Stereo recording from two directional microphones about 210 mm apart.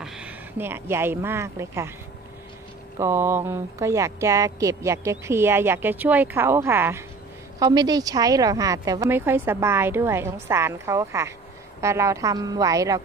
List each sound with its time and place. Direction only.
0.0 s speech: 5° right (ahead or behind)
3.0 s speech: 10° right (ahead or behind)